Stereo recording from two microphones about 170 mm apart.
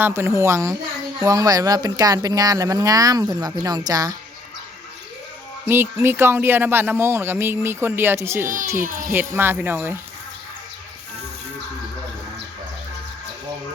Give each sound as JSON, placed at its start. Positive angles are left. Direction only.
{"t": 0.0, "sound": "speech", "side_deg": -15}
{"t": 5.6, "sound": "speech", "side_deg": -15}